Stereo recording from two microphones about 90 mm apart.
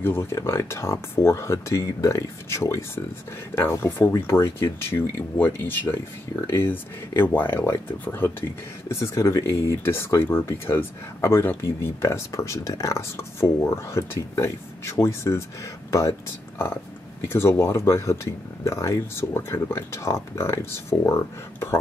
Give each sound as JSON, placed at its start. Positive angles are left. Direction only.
{"t": 0.0, "sound": "speech", "side_deg": 25}
{"t": 17.3, "sound": "speech", "side_deg": 30}